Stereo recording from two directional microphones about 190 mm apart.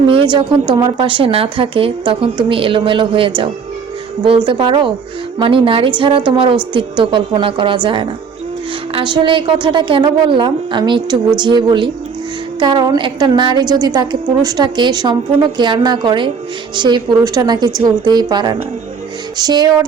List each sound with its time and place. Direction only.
0.1 s a woman's voice: 30° right (ahead or behind)